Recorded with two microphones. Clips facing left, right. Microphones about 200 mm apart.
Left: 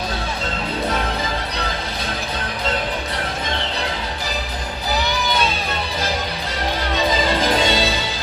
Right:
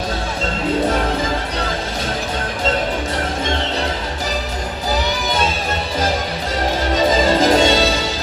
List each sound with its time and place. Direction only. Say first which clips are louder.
6.9 s music: right 5 dB; 45° right (ahead or behind)